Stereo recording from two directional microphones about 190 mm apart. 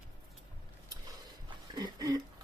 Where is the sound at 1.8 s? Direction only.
20° right (ahead or behind).